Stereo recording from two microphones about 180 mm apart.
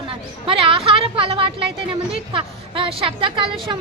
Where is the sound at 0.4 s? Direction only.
30° right (ahead or behind).